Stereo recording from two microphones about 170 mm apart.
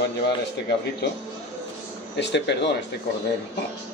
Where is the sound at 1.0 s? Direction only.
75° left (ahead or behind).